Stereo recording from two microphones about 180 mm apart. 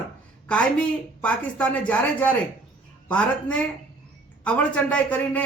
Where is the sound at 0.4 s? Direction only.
5° left (ahead or behind).